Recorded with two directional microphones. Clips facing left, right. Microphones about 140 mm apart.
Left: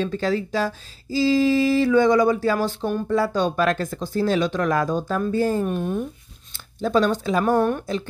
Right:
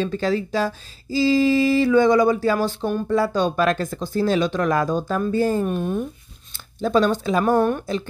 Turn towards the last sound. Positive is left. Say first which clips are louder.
# right 1 dB
turn(degrees=-15)  # may be behind; listen again after turning